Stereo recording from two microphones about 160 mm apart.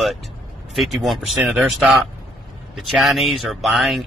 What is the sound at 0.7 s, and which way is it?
Speech, centre (ahead or behind).